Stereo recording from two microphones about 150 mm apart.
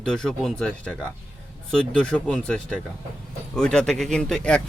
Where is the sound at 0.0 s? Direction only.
5° left (ahead or behind).